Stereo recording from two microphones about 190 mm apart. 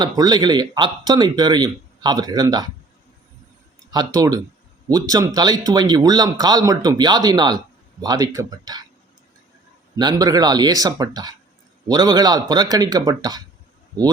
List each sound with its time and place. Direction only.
0.0 s speech: 20° right (ahead or behind)
3.9 s speech: 20° right (ahead or behind)
10.0 s speech: 20° right (ahead or behind)